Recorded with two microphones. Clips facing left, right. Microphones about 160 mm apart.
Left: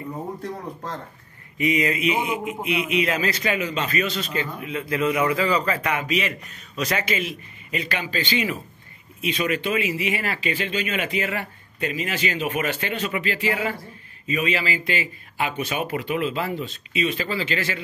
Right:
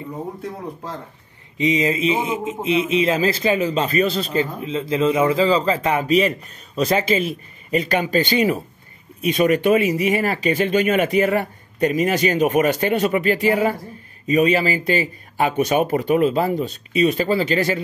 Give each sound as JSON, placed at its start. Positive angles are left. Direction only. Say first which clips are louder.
{"t": 1.6, "sound": "a man's voice", "louder": "right 3 dB", "side_deg": -25}